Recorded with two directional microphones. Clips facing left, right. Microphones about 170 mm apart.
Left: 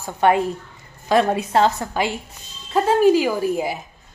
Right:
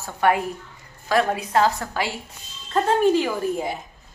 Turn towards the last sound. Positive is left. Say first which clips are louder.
# left 3 dB
turn(degrees=5)  # may be behind; listen again after turning